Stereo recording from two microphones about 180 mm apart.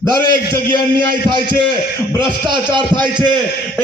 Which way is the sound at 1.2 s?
25° right (ahead or behind).